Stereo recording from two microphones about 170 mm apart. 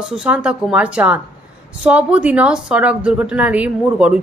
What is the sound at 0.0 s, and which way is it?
A woman's voice, 5° right (ahead or behind).